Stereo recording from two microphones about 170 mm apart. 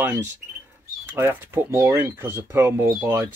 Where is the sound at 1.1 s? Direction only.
15° right (ahead or behind).